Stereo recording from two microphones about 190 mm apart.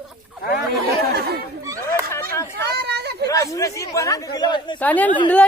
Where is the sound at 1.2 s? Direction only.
55° right (ahead or behind).